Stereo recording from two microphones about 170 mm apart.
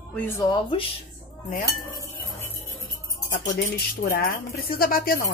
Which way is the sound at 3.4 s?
60° left (ahead or behind).